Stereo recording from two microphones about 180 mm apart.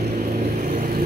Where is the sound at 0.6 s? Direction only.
50° right (ahead or behind).